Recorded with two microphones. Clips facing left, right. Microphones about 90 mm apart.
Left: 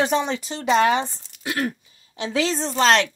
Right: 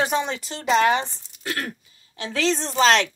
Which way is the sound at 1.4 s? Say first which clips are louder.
Left 4 dB; 15° left (ahead or behind).